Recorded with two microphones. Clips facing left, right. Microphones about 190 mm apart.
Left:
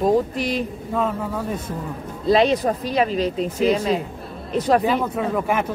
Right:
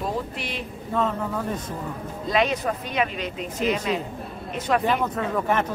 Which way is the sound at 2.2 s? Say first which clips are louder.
Left 6 dB; 35° left (ahead or behind).